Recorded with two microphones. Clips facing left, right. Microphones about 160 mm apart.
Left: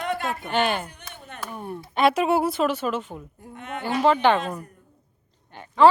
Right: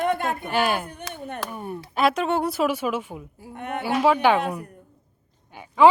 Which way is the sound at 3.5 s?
55° right (ahead or behind).